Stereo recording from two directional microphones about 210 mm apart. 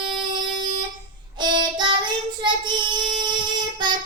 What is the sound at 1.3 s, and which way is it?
Child singing, 20° right (ahead or behind).